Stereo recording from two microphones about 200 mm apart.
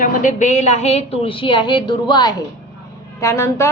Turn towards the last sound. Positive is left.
turn(degrees=15)  # may be behind; listen again after turning